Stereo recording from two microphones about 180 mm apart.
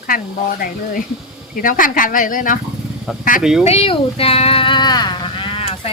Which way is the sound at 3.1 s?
5° right (ahead or behind).